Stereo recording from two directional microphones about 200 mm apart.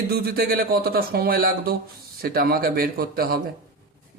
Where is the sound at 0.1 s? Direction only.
50° right (ahead or behind).